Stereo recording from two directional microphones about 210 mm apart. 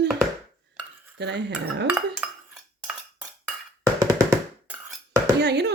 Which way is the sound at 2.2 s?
5° right (ahead or behind).